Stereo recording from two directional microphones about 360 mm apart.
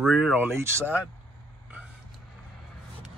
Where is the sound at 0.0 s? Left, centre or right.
Centre.